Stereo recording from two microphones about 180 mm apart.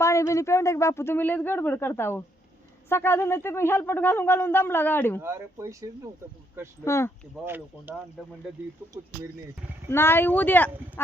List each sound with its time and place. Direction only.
0.0 s speech: 15° left (ahead or behind)
5.2 s speech: 15° right (ahead or behind)
6.8 s speech: 15° left (ahead or behind)
7.4 s speech: 10° right (ahead or behind)
8.2 s speech: 5° left (ahead or behind)
9.9 s speech: 10° left (ahead or behind)